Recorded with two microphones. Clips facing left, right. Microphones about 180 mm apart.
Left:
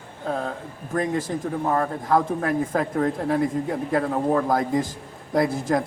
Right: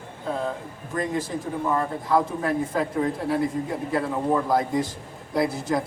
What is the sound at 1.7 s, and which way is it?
A man's voice, 50° left (ahead or behind).